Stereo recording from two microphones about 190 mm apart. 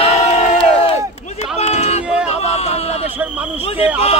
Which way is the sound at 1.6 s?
35° left (ahead or behind).